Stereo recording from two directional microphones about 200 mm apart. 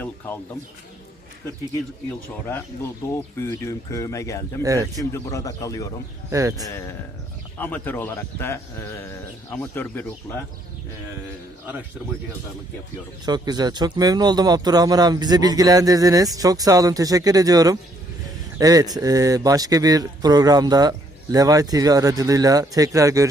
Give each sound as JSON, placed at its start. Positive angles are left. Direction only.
{"t": 3.6, "sound": "speech", "side_deg": 15}
{"t": 4.6, "sound": "speech", "side_deg": -15}
{"t": 4.9, "sound": "speech", "side_deg": 15}
{"t": 6.3, "sound": "speech", "side_deg": -15}
{"t": 7.6, "sound": "speech", "side_deg": 10}
{"t": 13.2, "sound": "speech", "side_deg": -20}